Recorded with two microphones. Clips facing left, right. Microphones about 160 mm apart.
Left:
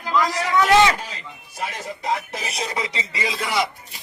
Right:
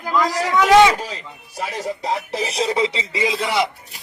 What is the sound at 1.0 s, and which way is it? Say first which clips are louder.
Speech: right 5 dB; 35° right (ahead or behind).